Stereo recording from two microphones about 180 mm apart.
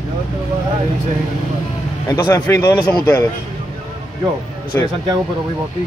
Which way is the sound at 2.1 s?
15° left (ahead or behind).